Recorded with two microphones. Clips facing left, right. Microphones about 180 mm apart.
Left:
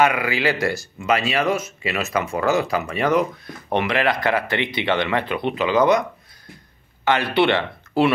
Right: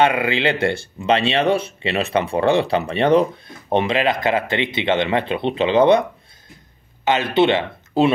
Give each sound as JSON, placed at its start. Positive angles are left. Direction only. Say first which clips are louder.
{"t": 0.0, "sound": "speech", "louder": "right 2 dB", "side_deg": -25}
{"t": 7.1, "sound": "speech", "louder": "right 2 dB", "side_deg": -20}